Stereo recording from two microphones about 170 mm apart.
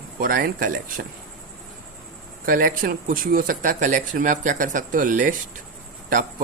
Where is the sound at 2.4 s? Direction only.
55° right (ahead or behind).